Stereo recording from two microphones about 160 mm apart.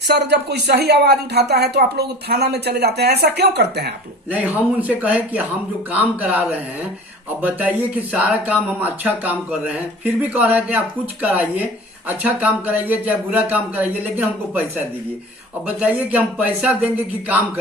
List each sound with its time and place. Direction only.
0.1 s a woman's voice: 90° right
4.3 s speech: 10° right (ahead or behind)
15.6 s speech: 10° right (ahead or behind)